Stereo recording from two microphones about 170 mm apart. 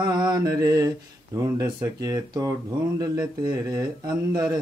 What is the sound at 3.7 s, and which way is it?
Mantra, 20° right (ahead or behind).